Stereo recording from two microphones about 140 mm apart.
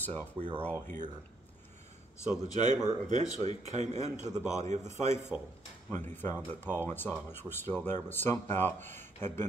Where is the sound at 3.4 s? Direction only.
55° right (ahead or behind).